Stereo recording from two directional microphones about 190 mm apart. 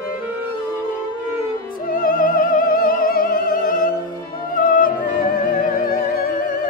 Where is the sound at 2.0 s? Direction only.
45° left (ahead or behind).